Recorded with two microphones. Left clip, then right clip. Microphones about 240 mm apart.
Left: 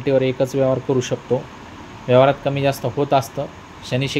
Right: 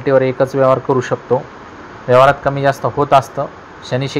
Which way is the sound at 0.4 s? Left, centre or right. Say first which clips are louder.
Right 6 dB; centre.